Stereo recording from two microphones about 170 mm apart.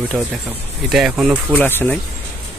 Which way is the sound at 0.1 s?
5° left (ahead or behind).